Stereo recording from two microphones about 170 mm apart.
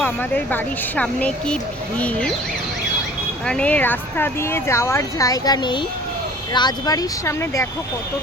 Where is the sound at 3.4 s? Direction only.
5° left (ahead or behind).